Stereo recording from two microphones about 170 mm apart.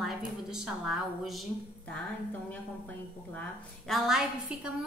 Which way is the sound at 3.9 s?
Centre (ahead or behind).